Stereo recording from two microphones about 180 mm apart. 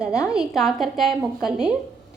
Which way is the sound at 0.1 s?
15° left (ahead or behind).